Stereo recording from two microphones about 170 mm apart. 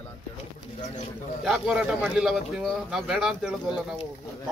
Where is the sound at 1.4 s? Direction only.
Centre (ahead or behind).